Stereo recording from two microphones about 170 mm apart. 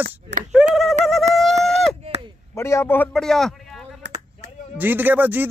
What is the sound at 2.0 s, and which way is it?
Chop, 35° right (ahead or behind).